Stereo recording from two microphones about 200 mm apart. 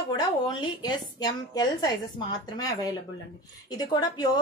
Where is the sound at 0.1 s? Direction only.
20° left (ahead or behind).